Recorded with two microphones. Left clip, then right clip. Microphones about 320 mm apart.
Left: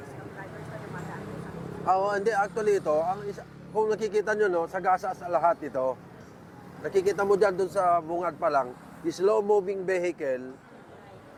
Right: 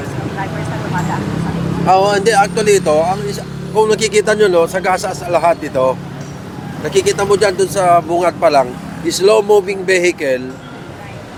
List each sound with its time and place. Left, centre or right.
1.9 s speech: left
3.8 s speech: centre; by 5.1 s left
5.3 s speech: left
6.9 s speech: left